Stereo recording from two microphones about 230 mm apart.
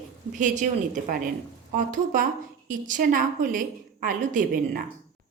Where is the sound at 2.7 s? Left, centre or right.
Right.